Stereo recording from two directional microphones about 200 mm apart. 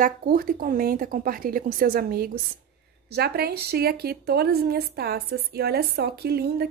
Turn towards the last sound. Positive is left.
turn(degrees=-50)  # may be behind; listen again after turning